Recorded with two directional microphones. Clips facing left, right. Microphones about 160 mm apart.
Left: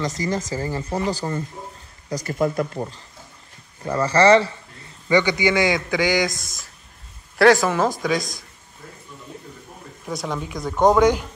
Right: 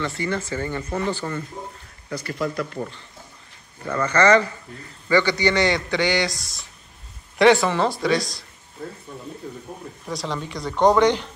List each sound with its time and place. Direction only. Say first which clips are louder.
0.0 s speech: left 1 dB; 40° left (ahead or behind)
3.8 s speech: left 2 dB; 30° left (ahead or behind)
5.0 s a man's voice: left 1 dB; 15° left (ahead or behind)
7.3 s speech: left 1 dB; 5° left (ahead or behind)
9.7 s speech: right 6 dB; 20° right (ahead or behind)
10.0 s speech: left 1 dB; 5° left (ahead or behind)